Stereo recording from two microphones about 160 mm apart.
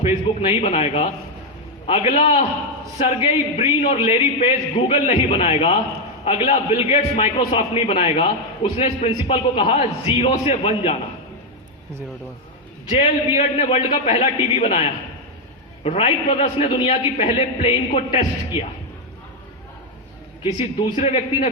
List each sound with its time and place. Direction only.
0.0 s a man's voice: 40° left (ahead or behind)
12.9 s a man's voice: 35° left (ahead or behind)
20.4 s a man's voice: 35° left (ahead or behind)